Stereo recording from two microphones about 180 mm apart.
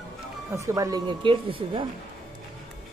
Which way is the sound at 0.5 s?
15° right (ahead or behind).